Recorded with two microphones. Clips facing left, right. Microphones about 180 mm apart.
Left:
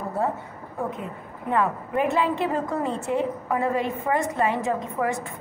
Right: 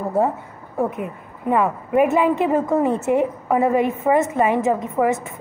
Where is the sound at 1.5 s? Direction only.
15° right (ahead or behind).